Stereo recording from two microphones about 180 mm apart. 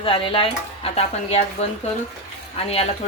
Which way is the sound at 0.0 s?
30° left (ahead or behind).